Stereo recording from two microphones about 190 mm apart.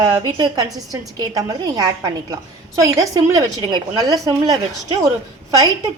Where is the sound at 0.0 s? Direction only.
20° right (ahead or behind).